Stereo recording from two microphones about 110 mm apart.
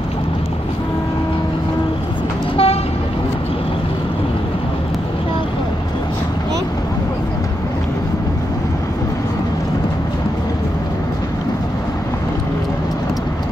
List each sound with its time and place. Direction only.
2.5 s vehicle: 60° left (ahead or behind)